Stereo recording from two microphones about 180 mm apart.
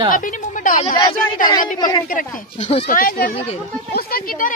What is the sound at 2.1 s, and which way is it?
Speech, 45° left (ahead or behind).